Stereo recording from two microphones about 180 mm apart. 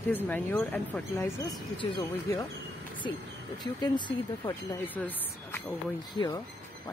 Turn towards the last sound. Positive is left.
turn(degrees=25)  # may be behind; listen again after turning